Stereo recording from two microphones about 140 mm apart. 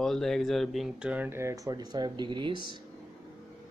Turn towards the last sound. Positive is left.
turn(degrees=-35)  # may be behind; listen again after turning